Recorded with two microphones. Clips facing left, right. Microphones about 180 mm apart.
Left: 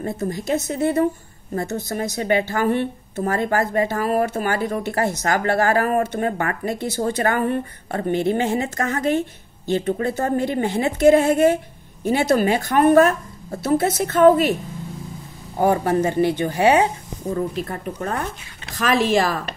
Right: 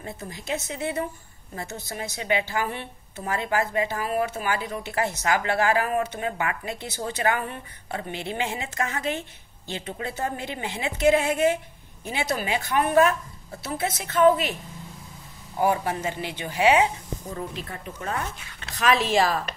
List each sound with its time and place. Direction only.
0.0 s speech: 40° left (ahead or behind)
15.5 s speech: 45° left (ahead or behind)